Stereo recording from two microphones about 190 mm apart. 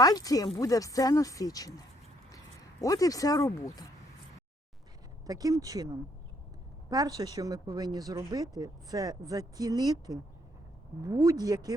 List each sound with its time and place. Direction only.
0.0 s speech: 20° left (ahead or behind)
2.8 s speech: 20° left (ahead or behind)
5.2 s speech: 20° right (ahead or behind)
6.9 s speech: 20° right (ahead or behind)
11.0 s speech: 20° right (ahead or behind)